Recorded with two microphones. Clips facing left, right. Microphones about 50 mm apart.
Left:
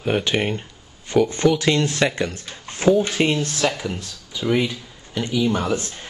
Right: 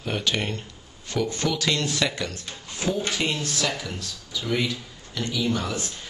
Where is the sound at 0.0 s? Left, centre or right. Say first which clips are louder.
Left 6 dB; left.